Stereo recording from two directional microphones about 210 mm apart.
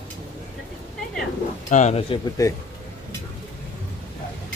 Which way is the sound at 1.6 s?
35° left (ahead or behind).